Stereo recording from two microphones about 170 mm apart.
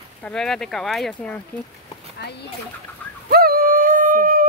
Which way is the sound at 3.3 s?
60° right (ahead or behind).